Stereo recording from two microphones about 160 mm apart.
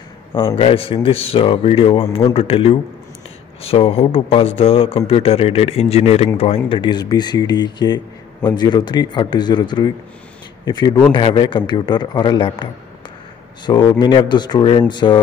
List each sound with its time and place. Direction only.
0.3 s a man's voice: 30° left (ahead or behind)
13.7 s a man's voice: 25° left (ahead or behind)